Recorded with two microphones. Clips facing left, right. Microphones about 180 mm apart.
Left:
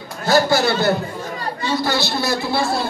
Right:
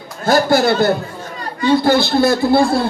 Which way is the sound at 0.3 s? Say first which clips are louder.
Right 3 dB; 55° right (ahead or behind).